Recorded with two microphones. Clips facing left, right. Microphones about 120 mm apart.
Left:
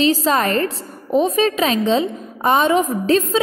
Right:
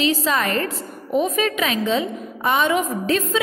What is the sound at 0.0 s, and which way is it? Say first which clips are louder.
A woman's voice: left 4 dB; 35° left (ahead or behind).